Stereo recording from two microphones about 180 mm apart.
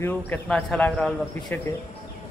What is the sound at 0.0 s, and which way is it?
Speech, 5° left (ahead or behind).